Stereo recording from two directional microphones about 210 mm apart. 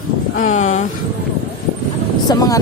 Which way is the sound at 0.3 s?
35° left (ahead or behind).